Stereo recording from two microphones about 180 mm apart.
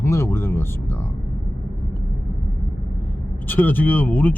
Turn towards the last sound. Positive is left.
turn(degrees=10)  # may be behind; listen again after turning